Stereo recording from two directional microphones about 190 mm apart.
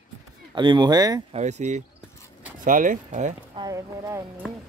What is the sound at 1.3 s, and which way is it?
Speech, 35° right (ahead or behind).